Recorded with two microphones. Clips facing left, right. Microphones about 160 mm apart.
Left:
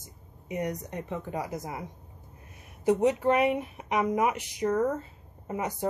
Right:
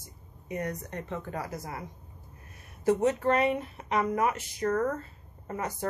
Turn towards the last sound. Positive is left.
turn(degrees=15)  # may be behind; listen again after turning